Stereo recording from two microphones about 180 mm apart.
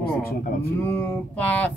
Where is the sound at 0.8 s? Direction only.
10° left (ahead or behind).